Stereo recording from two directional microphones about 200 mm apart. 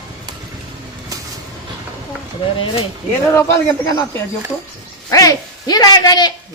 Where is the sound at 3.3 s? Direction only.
15° left (ahead or behind).